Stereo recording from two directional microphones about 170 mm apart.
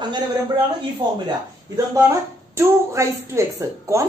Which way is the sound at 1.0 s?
25° right (ahead or behind).